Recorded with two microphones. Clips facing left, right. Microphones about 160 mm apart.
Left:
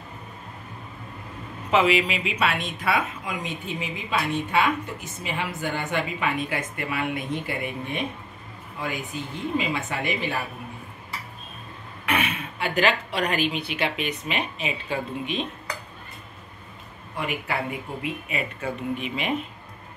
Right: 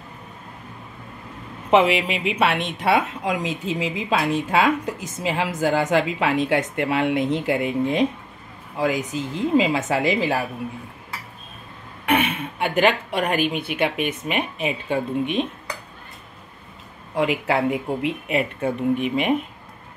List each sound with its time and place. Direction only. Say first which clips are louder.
1.7 s a woman's voice: right 3 dB; 60° right (ahead or behind); by 10.4 s 90° right
12.1 s speech: right 5 dB; 55° right (ahead or behind)
17.1 s speech: right 8 dB; 90° right; by 19.3 s 55° right (ahead or behind)